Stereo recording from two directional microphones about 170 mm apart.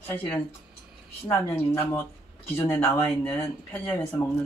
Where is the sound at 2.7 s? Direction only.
5° left (ahead or behind).